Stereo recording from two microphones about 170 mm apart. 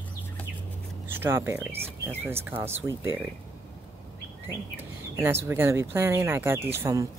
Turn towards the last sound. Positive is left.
turn(degrees=-20)  # may be behind; listen again after turning